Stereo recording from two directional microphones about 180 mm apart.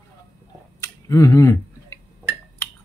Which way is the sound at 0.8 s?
15° left (ahead or behind).